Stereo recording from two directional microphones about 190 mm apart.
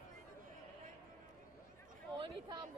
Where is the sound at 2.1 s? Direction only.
25° right (ahead or behind).